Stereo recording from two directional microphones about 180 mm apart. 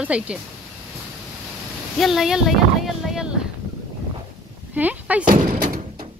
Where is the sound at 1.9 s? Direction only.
Centre (ahead or behind).